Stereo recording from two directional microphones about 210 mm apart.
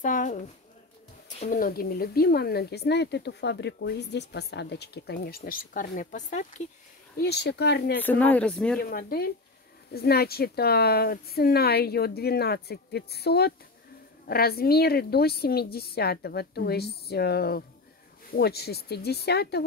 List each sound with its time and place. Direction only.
0.0 s a sound: 40° left (ahead or behind)
1.4 s speech: 40° left (ahead or behind)
7.2 s speech: 50° left (ahead or behind)
8.0 s speech: 10° left (ahead or behind)
8.8 s speech: 45° left (ahead or behind)